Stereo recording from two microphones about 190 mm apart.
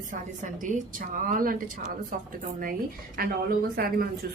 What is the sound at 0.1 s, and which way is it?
A woman's voice, 45° right (ahead or behind).